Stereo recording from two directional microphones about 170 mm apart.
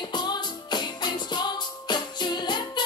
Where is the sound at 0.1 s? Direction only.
25° left (ahead or behind).